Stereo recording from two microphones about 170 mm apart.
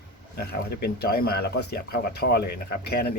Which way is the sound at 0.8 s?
70° left (ahead or behind).